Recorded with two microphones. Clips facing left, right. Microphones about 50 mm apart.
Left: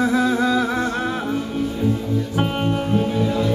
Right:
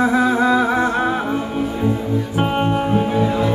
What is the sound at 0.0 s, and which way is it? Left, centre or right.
Music, centre.